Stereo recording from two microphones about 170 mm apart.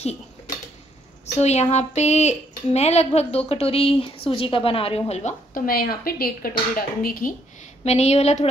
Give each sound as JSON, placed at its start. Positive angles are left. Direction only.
{"t": 1.4, "sound": "speech", "side_deg": 40}
{"t": 5.5, "sound": "a woman's voice", "side_deg": 60}
{"t": 7.8, "sound": "speech", "side_deg": 40}